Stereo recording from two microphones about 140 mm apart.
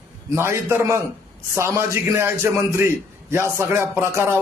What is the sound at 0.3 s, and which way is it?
A man's voice, 15° right (ahead or behind).